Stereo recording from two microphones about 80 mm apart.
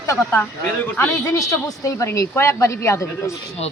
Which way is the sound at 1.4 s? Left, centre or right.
Left.